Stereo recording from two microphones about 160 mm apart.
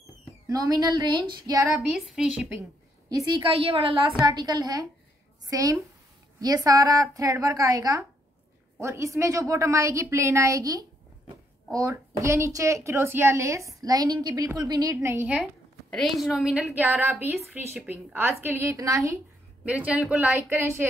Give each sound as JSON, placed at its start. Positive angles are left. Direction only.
{"t": 0.5, "sound": "a woman's voice", "side_deg": -20}
{"t": 1.8, "sound": "speech", "side_deg": 0}
{"t": 3.1, "sound": "a woman's voice", "side_deg": -25}
{"t": 4.2, "sound": "a woman's voice", "side_deg": -25}
{"t": 15.9, "sound": "a woman's voice", "side_deg": 0}
{"t": 19.6, "sound": "a woman's voice", "side_deg": -10}